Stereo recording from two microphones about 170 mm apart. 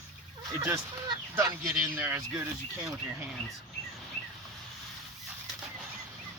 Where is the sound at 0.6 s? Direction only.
20° right (ahead or behind).